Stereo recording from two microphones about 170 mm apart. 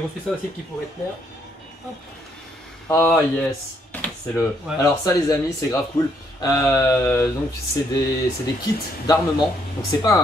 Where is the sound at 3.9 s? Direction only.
10° left (ahead or behind).